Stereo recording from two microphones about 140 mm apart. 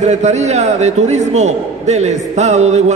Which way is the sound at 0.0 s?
55° right (ahead or behind).